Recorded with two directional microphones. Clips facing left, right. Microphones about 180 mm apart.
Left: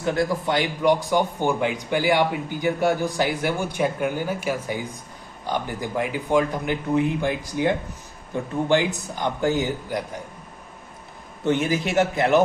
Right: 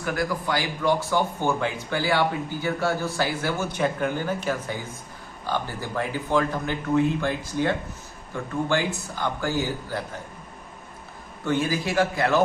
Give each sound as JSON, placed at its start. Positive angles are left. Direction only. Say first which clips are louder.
{"t": 0.0, "sound": "a man's voice", "louder": "left 4 dB", "side_deg": 25}
{"t": 11.4, "sound": "a man's voice", "louder": "left 3 dB", "side_deg": 20}